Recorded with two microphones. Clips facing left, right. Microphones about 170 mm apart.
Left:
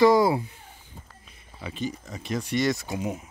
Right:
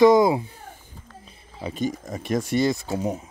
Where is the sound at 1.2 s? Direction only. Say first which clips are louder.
Right 6 dB; 35° right (ahead or behind).